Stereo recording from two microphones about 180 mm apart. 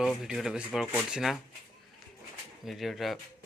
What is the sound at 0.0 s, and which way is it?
Speech, centre (ahead or behind).